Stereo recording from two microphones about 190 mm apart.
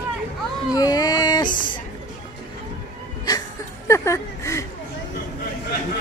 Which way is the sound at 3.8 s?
15° left (ahead or behind).